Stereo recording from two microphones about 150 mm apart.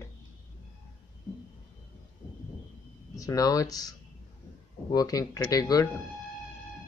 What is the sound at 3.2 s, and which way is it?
Speech, 25° left (ahead or behind).